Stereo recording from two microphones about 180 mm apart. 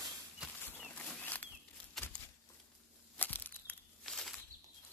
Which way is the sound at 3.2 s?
10° left (ahead or behind).